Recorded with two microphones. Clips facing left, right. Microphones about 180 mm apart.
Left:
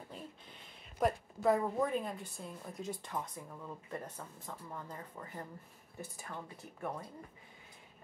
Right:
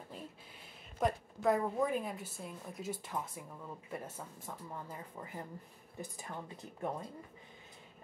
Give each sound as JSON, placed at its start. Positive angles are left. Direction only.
{"t": 0.9, "sound": "a woman's voice", "side_deg": 0}